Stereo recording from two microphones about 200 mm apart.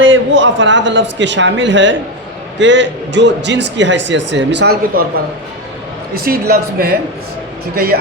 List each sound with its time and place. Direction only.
0.0 s a man's voice: 70° right (ahead or behind); by 5.0 s 55° right (ahead or behind)
6.1 s speech: 50° right (ahead or behind)